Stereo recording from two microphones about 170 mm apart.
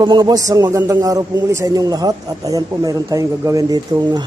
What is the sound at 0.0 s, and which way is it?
A man's voice, 25° right (ahead or behind).